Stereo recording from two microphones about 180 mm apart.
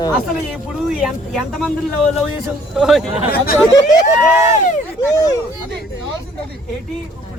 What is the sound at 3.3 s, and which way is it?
Speech, 60° left (ahead or behind).